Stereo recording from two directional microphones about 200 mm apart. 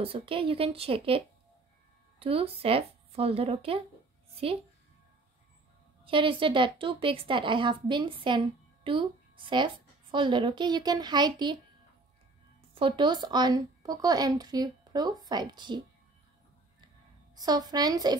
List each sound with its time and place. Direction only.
0.0 s a woman's voice: 30° right (ahead or behind)
6.0 s a woman's voice: 25° right (ahead or behind)
12.7 s a woman's voice: 25° right (ahead or behind)
17.4 s a woman's voice: 20° right (ahead or behind)